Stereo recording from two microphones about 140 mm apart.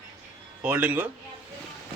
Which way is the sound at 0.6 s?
10° right (ahead or behind).